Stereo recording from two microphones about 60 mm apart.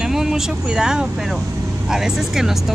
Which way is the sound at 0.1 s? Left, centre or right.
Centre.